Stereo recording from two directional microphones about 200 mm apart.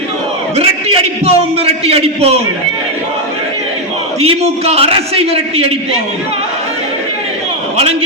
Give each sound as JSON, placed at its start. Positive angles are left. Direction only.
{"t": 0.5, "sound": "a man's voice", "side_deg": -30}
{"t": 4.6, "sound": "a man's voice", "side_deg": -30}